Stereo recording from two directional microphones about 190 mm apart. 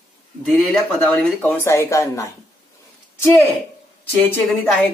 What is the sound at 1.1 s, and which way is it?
Speech, 5° left (ahead or behind).